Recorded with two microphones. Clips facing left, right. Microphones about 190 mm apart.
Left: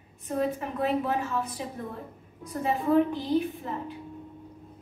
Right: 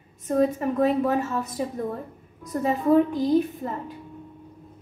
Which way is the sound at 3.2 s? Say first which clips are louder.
Right 5 dB; 40° right (ahead or behind).